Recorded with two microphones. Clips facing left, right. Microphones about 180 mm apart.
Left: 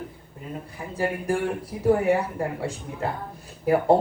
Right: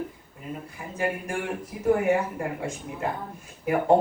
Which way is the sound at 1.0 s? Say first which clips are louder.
Left 1 dB; 35° left (ahead or behind).